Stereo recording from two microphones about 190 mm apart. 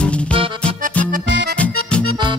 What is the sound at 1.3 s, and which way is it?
Accordion, 65° right (ahead or behind).